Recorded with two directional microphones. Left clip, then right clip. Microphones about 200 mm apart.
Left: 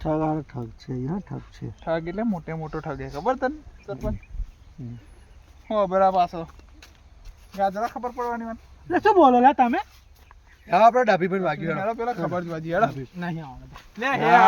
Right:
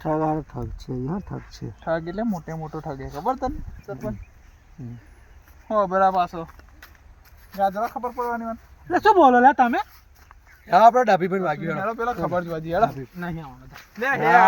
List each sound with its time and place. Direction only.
0.0 s speech: 10° left (ahead or behind)
1.8 s speech: 15° right (ahead or behind)
2.3 s speech: centre (ahead or behind)
5.6 s speech: centre (ahead or behind); by 6.5 s 15° left (ahead or behind)
7.5 s speech: centre (ahead or behind)
13.1 s speech: 30° left (ahead or behind)